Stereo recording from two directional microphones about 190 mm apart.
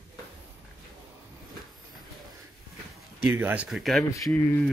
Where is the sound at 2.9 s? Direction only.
5° right (ahead or behind).